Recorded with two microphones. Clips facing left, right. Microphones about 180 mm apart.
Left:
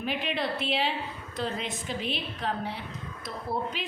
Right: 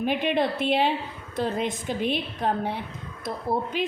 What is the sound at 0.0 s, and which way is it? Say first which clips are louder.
A woman's voice: right 7 dB; 55° right (ahead or behind).